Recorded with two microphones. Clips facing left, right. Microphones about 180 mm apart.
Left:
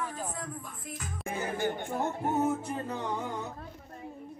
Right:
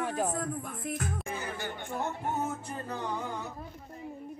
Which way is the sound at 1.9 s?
45° left (ahead or behind).